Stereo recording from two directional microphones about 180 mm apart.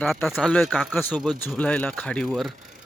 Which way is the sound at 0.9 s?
10° left (ahead or behind).